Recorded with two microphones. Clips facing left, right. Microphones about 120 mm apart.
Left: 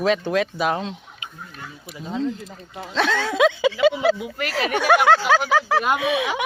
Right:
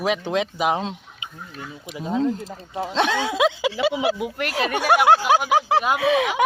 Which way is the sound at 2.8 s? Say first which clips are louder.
Even; 20° right (ahead or behind).